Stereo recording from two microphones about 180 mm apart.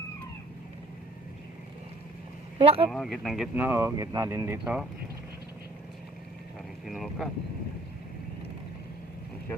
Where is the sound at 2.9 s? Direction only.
Centre (ahead or behind).